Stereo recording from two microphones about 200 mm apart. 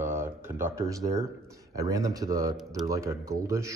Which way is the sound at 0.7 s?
15° right (ahead or behind).